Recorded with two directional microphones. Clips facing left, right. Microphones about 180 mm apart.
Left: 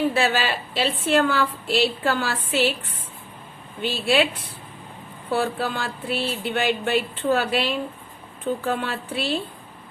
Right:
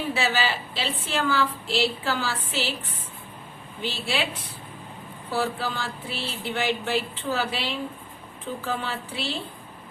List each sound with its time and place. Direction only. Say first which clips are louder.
0.1 s a woman's voice: left 3 dB; 60° left (ahead or behind)
5.3 s a woman's voice: left 4 dB; 60° left (ahead or behind)